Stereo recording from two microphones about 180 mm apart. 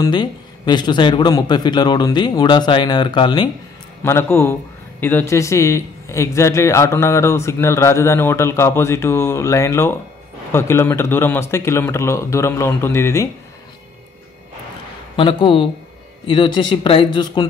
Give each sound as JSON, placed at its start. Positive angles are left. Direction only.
{"t": 0.0, "sound": "a man's voice", "side_deg": 25}
{"t": 4.0, "sound": "a man's voice", "side_deg": 15}
{"t": 15.1, "sound": "a man's voice", "side_deg": 30}